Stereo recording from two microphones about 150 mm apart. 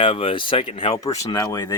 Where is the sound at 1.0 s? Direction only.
25° left (ahead or behind).